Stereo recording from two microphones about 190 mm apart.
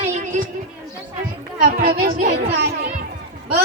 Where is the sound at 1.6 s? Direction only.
50° right (ahead or behind).